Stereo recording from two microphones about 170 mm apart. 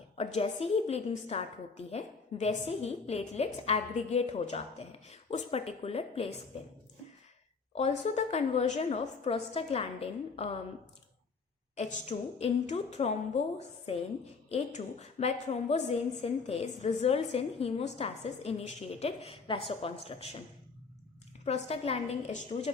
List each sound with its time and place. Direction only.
0.2 s a woman's voice: 35° left (ahead or behind)
7.8 s a woman's voice: 40° left (ahead or behind)
11.7 s a woman's voice: 45° left (ahead or behind)
21.4 s a woman's voice: 35° left (ahead or behind)